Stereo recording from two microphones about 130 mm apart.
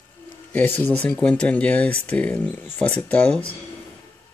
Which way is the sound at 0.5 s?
15° left (ahead or behind).